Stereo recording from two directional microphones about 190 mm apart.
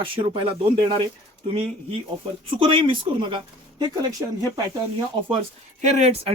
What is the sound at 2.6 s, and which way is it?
Speech, 25° right (ahead or behind).